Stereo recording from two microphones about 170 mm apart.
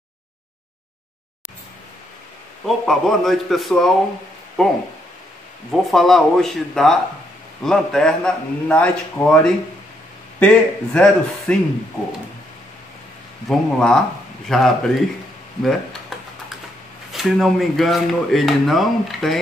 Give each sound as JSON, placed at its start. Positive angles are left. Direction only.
{"t": 2.6, "sound": "a man's voice", "side_deg": 0}
{"t": 13.5, "sound": "speech", "side_deg": 5}
{"t": 17.1, "sound": "speech", "side_deg": 0}